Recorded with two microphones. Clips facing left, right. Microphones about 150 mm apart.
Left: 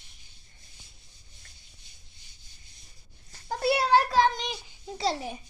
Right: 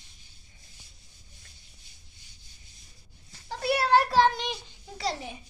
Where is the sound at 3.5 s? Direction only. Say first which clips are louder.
Left 2 dB; 35° left (ahead or behind).